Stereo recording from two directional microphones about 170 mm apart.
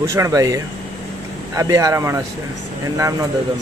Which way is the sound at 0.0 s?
15° right (ahead or behind).